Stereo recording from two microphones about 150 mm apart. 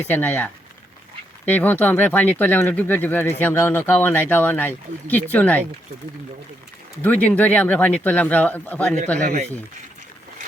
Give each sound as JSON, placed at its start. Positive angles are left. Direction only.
{"t": 0.1, "sound": "speech", "side_deg": 10}
{"t": 7.0, "sound": "speech", "side_deg": 10}
{"t": 9.2, "sound": "speech", "side_deg": -55}